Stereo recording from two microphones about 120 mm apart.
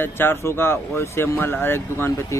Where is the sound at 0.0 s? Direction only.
20° left (ahead or behind).